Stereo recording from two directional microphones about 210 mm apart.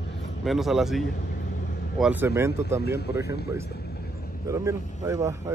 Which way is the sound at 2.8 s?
50° left (ahead or behind).